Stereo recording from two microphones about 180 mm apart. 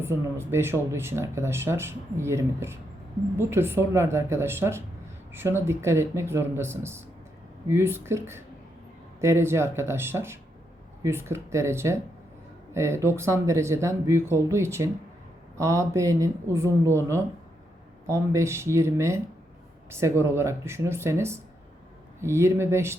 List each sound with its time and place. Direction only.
0.0 s speech: 15° right (ahead or behind)